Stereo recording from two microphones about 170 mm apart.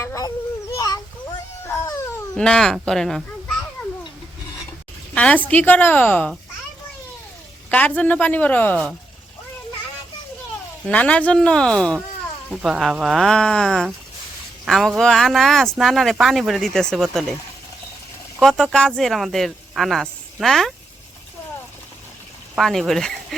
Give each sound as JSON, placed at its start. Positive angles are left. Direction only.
{"t": 0.0, "sound": "cat", "side_deg": 15}
{"t": 0.7, "sound": "a sound", "side_deg": 20}
{"t": 2.3, "sound": "speech", "side_deg": 5}
{"t": 5.1, "sound": "a woman's voice", "side_deg": 10}
{"t": 7.7, "sound": "a woman's voice", "side_deg": 10}
{"t": 10.8, "sound": "speech", "side_deg": 10}
{"t": 18.3, "sound": "speech", "side_deg": 0}
{"t": 22.5, "sound": "speech", "side_deg": 0}